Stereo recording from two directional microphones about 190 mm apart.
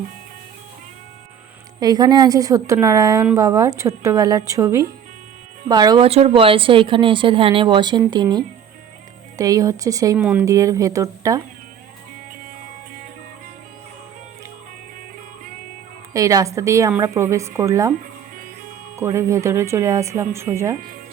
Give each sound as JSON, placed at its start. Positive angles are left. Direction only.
{"t": 1.8, "sound": "speech", "side_deg": -20}
{"t": 6.1, "sound": "speech", "side_deg": -30}
{"t": 16.1, "sound": "speech", "side_deg": -15}
{"t": 18.9, "sound": "speech", "side_deg": -15}